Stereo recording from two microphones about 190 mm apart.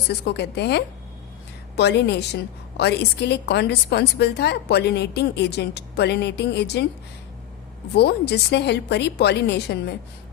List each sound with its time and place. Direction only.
0.1 s a woman's voice: 60° left (ahead or behind)
7.9 s a woman's voice: 60° left (ahead or behind)